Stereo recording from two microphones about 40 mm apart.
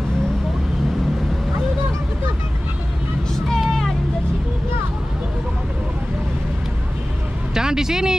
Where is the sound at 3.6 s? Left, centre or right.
Centre.